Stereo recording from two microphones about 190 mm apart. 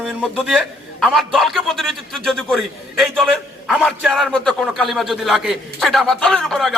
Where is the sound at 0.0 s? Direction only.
5° right (ahead or behind).